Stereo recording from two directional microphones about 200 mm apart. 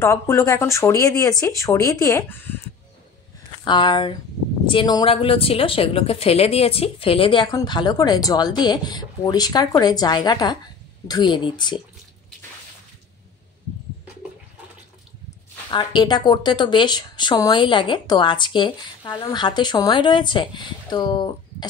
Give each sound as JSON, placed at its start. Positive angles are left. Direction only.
{"t": 0.0, "sound": "speech", "side_deg": 15}
{"t": 3.6, "sound": "a woman's voice", "side_deg": 25}
{"t": 15.7, "sound": "a woman's voice", "side_deg": 20}